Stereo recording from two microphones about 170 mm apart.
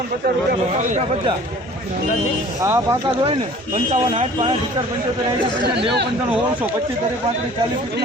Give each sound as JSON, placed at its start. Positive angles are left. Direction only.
{"t": 0.8, "sound": "speech", "side_deg": -45}
{"t": 2.6, "sound": "speech", "side_deg": -15}
{"t": 4.1, "sound": "speech", "side_deg": -35}